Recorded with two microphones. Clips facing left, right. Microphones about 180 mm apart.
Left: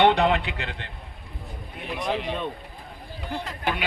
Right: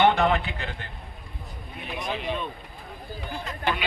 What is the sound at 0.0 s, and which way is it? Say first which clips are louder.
Speech: left 1 dB; 35° left (ahead or behind).